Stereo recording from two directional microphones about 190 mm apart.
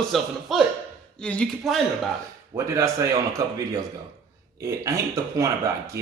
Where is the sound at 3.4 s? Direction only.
20° right (ahead or behind).